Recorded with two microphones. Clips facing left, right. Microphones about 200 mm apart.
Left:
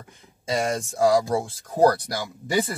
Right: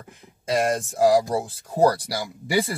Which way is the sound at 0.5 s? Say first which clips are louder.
Right 2 dB; centre (ahead or behind).